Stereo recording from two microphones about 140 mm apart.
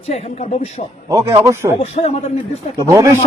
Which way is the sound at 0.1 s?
50° left (ahead or behind).